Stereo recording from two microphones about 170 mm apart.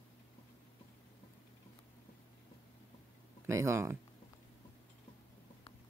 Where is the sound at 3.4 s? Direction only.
20° right (ahead or behind).